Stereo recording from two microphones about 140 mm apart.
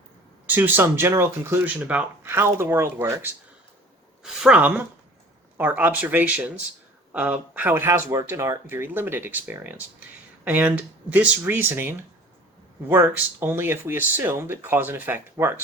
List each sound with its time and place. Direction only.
0.4 s speech: 15° right (ahead or behind)